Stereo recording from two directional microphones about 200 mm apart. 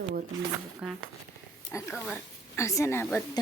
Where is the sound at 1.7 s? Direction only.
15° left (ahead or behind).